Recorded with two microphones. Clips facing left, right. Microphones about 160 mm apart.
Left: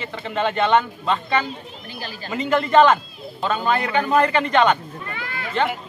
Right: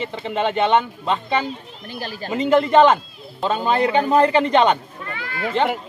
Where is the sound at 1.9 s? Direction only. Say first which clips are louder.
Right 5 dB; 50° right (ahead or behind).